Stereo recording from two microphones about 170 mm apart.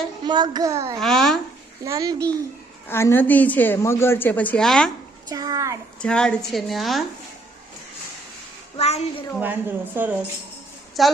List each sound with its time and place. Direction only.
0.3 s a child's voice: 25° right (ahead or behind)
0.9 s a woman's voice: centre (ahead or behind)
1.8 s a child's voice: 20° right (ahead or behind)
2.9 s a woman's voice: 15° left (ahead or behind)
5.3 s a child's voice: 20° right (ahead or behind)
6.0 s a woman's voice: 5° left (ahead or behind)
8.8 s a woman's voice: 40° left (ahead or behind)
9.4 s speech: 10° right (ahead or behind)
11.0 s a woman's voice: centre (ahead or behind)